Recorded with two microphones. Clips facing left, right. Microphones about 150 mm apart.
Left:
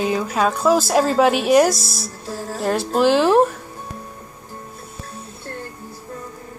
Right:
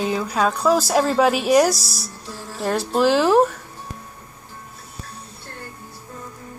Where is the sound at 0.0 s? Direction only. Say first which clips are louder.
Left 1 dB; centre (ahead or behind).